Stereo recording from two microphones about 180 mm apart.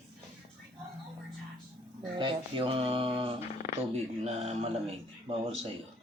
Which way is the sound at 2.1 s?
30° right (ahead or behind).